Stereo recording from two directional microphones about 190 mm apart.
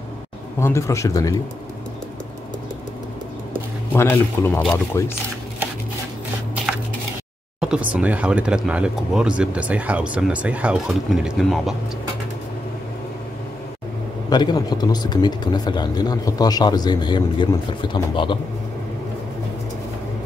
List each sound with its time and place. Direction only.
0.6 s speech: 15° left (ahead or behind)
3.9 s speech: 15° left (ahead or behind)
7.6 s speech: 5° right (ahead or behind)
14.3 s speech: 20° left (ahead or behind)